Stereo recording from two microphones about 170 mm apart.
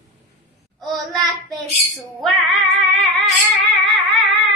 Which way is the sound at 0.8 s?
Centre (ahead or behind).